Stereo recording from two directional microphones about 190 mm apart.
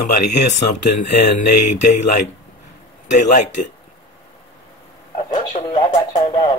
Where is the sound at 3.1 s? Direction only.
40° left (ahead or behind).